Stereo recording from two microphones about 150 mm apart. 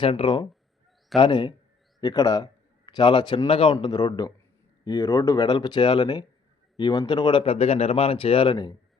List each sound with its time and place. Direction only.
0.0 s a man's voice: 35° left (ahead or behind)